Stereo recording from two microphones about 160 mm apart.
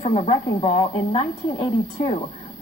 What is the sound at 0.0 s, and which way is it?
A woman's voice, 40° left (ahead or behind).